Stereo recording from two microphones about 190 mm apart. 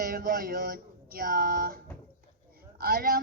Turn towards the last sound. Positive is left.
turn(degrees=-55)  # may be behind; listen again after turning